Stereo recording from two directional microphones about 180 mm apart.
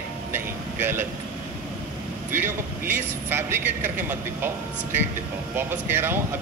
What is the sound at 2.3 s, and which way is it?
A man's voice, 10° right (ahead or behind).